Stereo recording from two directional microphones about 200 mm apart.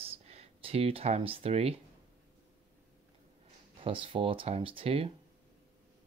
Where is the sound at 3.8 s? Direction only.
25° right (ahead or behind).